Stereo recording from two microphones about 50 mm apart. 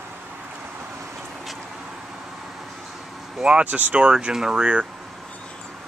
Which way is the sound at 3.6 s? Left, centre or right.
Right.